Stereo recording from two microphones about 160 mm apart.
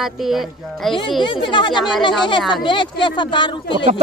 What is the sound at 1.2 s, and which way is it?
Speech, 30° left (ahead or behind).